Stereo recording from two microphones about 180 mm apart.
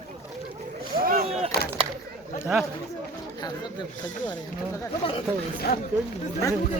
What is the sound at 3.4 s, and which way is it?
Speech, 25° left (ahead or behind).